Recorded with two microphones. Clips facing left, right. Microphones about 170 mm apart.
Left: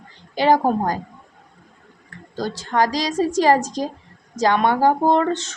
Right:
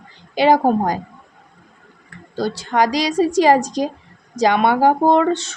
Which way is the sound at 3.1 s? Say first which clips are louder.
Right 4 dB; 15° right (ahead or behind).